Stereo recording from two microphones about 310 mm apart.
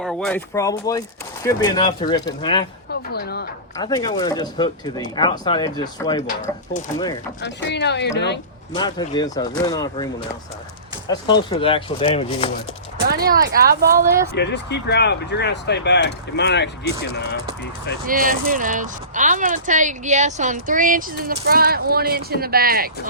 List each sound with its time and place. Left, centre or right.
0.0 s speech: centre
2.9 s a sound: left
3.8 s speech: centre
7.4 s speech: left
8.7 s speech: centre
13.1 s speech: right
14.3 s speech: left
18.0 s speech: right